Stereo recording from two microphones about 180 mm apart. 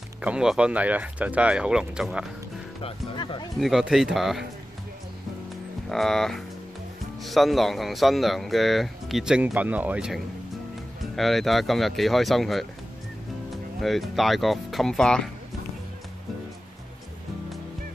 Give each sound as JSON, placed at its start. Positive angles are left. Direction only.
{"t": 0.2, "sound": "speech", "side_deg": -5}
{"t": 2.8, "sound": "speech", "side_deg": 25}
{"t": 3.5, "sound": "speech", "side_deg": 0}
{"t": 5.9, "sound": "speech", "side_deg": 0}
{"t": 13.7, "sound": "speech", "side_deg": 0}